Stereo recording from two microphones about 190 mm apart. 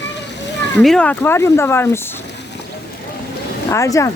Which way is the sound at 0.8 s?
5° left (ahead or behind).